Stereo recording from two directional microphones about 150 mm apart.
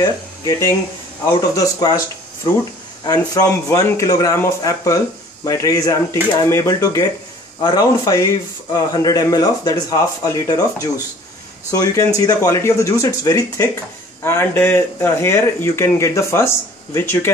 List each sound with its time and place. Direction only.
0.0 s a man's voice: 20° left (ahead or behind)
3.0 s a man's voice: 25° left (ahead or behind)